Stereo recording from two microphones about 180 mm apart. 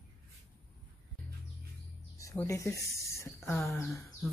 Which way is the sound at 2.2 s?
15° left (ahead or behind).